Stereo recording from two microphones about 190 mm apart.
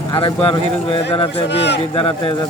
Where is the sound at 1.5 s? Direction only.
65° left (ahead or behind).